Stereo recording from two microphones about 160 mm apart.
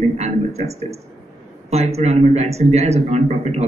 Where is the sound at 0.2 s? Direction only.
40° right (ahead or behind).